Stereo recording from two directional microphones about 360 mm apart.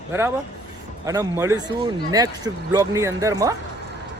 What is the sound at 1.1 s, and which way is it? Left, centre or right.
Speech, centre.